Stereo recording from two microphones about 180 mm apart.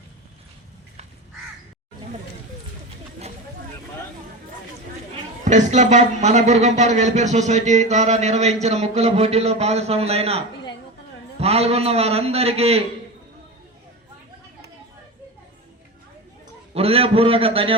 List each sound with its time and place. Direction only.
5.5 s speech: 40° right (ahead or behind)
16.7 s speech: 35° right (ahead or behind)